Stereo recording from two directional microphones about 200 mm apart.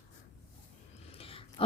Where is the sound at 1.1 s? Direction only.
25° left (ahead or behind).